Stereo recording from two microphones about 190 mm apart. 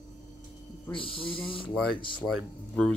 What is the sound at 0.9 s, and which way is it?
Speech, 30° left (ahead or behind).